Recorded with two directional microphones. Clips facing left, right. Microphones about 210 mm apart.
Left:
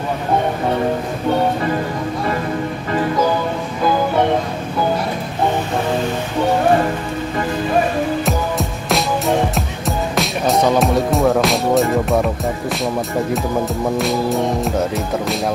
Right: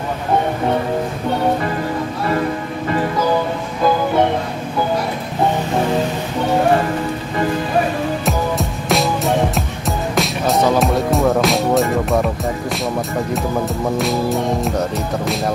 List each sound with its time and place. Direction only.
8.3 s music: centre (ahead or behind)
13.9 s speech: centre (ahead or behind)